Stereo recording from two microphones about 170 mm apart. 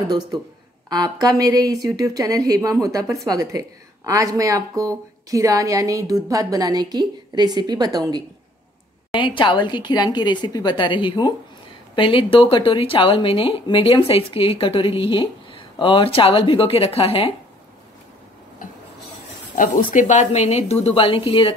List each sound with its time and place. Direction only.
0.8 s a woman's voice: 20° right (ahead or behind)
9.1 s a woman's voice: 30° left (ahead or behind)
19.5 s speech: 50° left (ahead or behind); by 21.5 s 30° left (ahead or behind)